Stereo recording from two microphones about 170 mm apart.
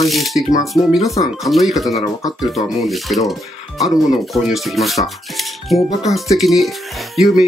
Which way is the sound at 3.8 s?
Centre (ahead or behind).